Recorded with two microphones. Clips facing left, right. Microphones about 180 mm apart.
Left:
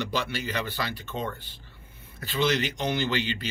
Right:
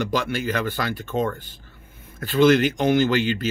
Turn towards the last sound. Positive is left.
turn(degrees=-50)  # may be behind; listen again after turning